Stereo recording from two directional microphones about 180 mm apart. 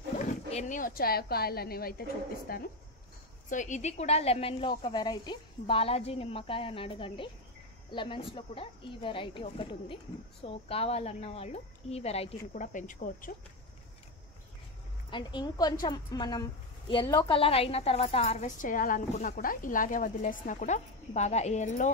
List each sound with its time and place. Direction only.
0.2 s speech: 40° left (ahead or behind); by 2.7 s 60° left (ahead or behind)
3.4 s a woman's voice: 45° left (ahead or behind)
15.0 s a woman's voice: 25° left (ahead or behind); by 21.9 s 40° left (ahead or behind)